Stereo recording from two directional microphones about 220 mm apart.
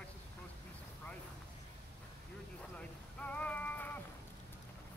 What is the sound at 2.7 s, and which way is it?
Boat, 5° left (ahead or behind).